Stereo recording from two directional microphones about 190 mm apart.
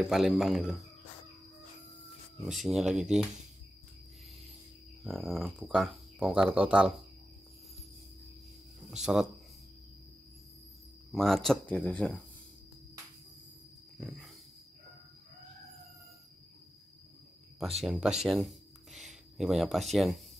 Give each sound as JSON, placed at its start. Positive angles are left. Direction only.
{"t": 0.1, "sound": "speech", "side_deg": 0}
{"t": 2.4, "sound": "speech", "side_deg": 0}
{"t": 5.0, "sound": "speech", "side_deg": 0}
{"t": 8.9, "sound": "speech", "side_deg": 0}
{"t": 11.1, "sound": "speech", "side_deg": 0}
{"t": 13.9, "sound": "wild animals", "side_deg": 0}
{"t": 17.6, "sound": "speech", "side_deg": 0}
{"t": 18.2, "sound": "a sound", "side_deg": 0}
{"t": 19.3, "sound": "speech", "side_deg": 0}